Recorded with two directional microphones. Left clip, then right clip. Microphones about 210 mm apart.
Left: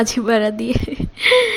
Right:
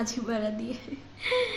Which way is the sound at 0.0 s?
40° left (ahead or behind).